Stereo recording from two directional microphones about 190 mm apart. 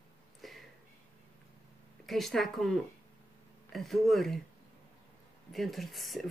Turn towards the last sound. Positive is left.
turn(degrees=0)  # may be behind; listen again after turning